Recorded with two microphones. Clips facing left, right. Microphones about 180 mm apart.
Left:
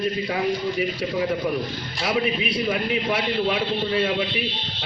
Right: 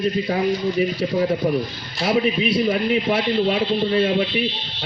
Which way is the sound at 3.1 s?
30° right (ahead or behind).